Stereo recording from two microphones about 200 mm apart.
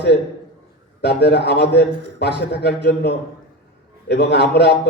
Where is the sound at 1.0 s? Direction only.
55° left (ahead or behind).